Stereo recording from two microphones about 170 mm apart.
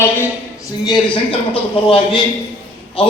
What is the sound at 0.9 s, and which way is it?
Speech, 30° left (ahead or behind).